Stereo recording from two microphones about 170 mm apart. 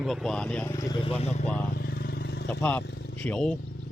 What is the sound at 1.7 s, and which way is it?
Vehicle, 65° left (ahead or behind).